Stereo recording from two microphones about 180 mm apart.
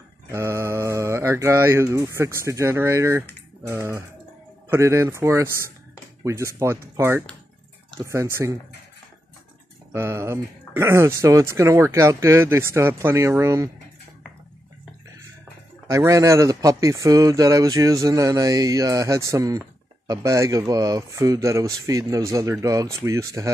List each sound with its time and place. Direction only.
0.3 s speech: 15° right (ahead or behind)
9.9 s speech: 15° right (ahead or behind)
15.9 s a man's voice: 15° right (ahead or behind)